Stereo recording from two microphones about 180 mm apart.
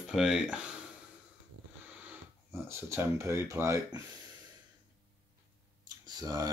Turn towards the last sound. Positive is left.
turn(degrees=-20)  # may be behind; listen again after turning